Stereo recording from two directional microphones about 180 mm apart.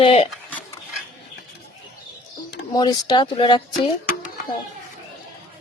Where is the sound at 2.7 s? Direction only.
20° left (ahead or behind).